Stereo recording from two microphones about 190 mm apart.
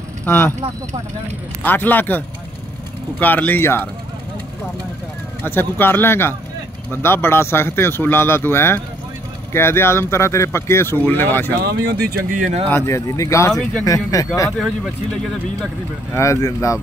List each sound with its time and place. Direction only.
0.2 s speech: 10° left (ahead or behind)
1.6 s speech: 10° left (ahead or behind)
5.4 s speech: 10° left (ahead or behind)
11.6 s speech: 60° right (ahead or behind); by 12.6 s 45° right (ahead or behind)
12.6 s speech: 15° left (ahead or behind)
13.5 s speech: 5° left (ahead or behind)
13.8 s speech: 20° left (ahead or behind)
15.6 s speech: 15° left (ahead or behind)